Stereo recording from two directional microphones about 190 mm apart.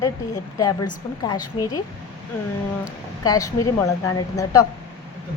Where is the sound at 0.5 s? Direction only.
20° left (ahead or behind).